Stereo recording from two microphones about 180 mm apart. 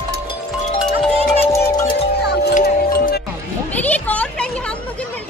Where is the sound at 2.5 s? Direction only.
55° left (ahead or behind).